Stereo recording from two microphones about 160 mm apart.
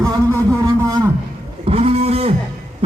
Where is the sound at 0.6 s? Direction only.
20° right (ahead or behind).